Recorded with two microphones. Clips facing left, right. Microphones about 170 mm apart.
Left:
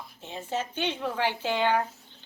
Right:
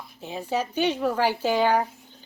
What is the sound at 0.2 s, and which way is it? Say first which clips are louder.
A woman's voice: right 5 dB; 10° right (ahead or behind).